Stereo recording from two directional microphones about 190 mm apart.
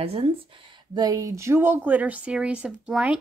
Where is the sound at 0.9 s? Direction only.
20° right (ahead or behind).